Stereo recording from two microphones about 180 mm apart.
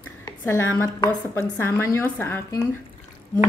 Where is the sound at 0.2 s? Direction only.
15° left (ahead or behind).